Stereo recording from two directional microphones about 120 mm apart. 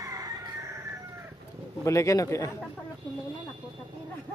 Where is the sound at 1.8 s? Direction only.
25° left (ahead or behind).